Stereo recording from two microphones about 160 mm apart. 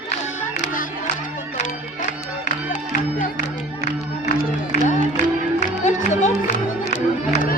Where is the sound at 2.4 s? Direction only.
50° left (ahead or behind).